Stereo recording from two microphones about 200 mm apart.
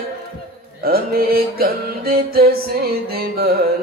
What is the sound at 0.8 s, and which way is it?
Mantra, 50° right (ahead or behind).